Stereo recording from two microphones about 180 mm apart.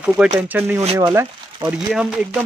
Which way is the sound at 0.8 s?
30° right (ahead or behind).